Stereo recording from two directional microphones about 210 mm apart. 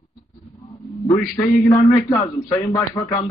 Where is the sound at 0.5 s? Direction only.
15° left (ahead or behind).